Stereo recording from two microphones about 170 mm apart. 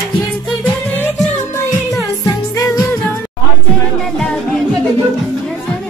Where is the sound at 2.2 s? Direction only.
20° left (ahead or behind).